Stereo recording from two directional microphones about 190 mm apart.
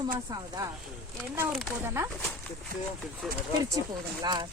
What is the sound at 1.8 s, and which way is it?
Speech, 15° right (ahead or behind).